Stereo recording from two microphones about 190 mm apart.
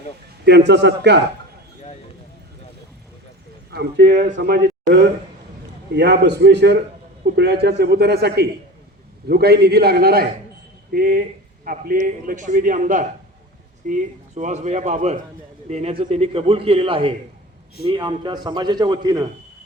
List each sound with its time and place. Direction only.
0.4 s a man's voice: 65° right (ahead or behind)
3.7 s a man's voice: 60° right (ahead or behind); by 19.3 s 20° right (ahead or behind)